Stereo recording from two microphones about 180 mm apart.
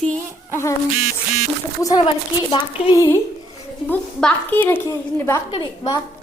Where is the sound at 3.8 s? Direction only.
5° left (ahead or behind).